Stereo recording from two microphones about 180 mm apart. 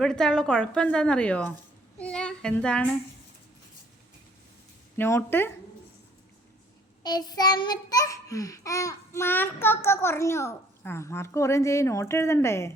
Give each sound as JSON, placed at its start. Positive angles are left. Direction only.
{"t": 0.0, "sound": "a woman's voice", "side_deg": 5}
{"t": 2.0, "sound": "female singing", "side_deg": 5}
{"t": 4.9, "sound": "child singing", "side_deg": 15}
{"t": 7.0, "sound": "child singing", "side_deg": 20}